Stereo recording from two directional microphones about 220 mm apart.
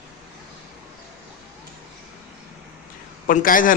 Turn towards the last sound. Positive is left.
turn(degrees=40)  # may be behind; listen again after turning